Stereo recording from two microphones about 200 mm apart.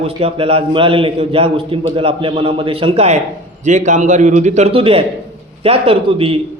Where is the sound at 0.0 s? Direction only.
30° right (ahead or behind).